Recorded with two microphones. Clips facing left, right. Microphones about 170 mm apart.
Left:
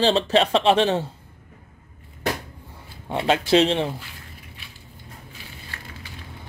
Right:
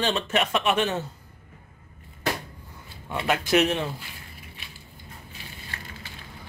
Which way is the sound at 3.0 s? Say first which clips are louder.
Left 5 dB; 25° left (ahead or behind).